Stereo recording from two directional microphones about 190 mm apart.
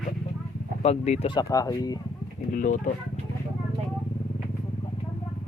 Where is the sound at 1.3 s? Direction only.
20° left (ahead or behind).